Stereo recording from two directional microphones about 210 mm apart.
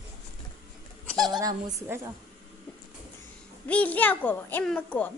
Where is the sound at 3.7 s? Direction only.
5° left (ahead or behind).